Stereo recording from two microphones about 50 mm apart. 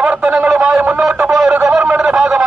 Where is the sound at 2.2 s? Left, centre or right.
Centre.